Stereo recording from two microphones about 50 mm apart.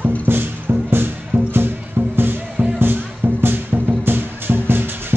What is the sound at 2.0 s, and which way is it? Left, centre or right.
Music, right.